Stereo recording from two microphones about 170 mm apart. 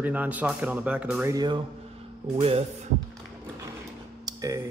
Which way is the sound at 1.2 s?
20° right (ahead or behind).